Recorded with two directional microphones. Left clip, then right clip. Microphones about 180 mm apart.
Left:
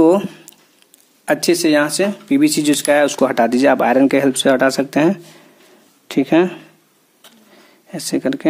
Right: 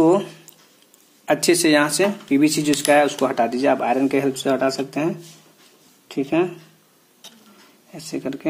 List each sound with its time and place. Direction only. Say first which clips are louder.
0.0 s speech: left 4 dB; 55° left (ahead or behind)
7.9 s speech: left 9 dB; 50° left (ahead or behind)